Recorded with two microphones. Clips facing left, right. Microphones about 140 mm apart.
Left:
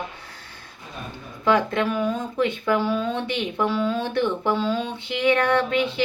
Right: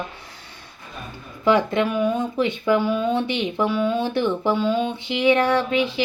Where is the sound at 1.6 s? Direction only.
20° right (ahead or behind).